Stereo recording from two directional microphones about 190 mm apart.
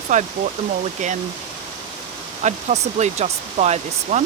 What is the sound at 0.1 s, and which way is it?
Speech, 40° right (ahead or behind).